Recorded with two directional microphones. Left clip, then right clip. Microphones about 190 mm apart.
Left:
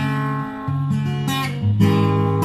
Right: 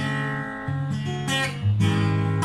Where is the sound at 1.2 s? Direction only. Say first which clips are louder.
Even; 20° left (ahead or behind).